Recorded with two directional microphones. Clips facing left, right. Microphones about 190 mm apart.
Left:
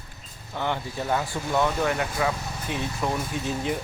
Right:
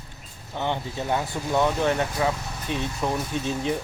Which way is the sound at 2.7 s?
15° left (ahead or behind).